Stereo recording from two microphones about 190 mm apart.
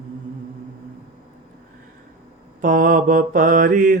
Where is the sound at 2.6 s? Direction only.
45° right (ahead or behind).